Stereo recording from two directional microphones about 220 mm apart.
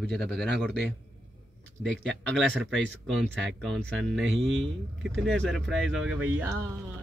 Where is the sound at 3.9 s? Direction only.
Centre (ahead or behind).